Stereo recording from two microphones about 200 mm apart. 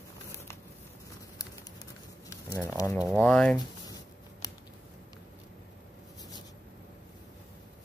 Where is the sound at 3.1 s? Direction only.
5° left (ahead or behind).